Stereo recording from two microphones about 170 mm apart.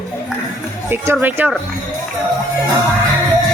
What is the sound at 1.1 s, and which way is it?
Speech, 10° right (ahead or behind).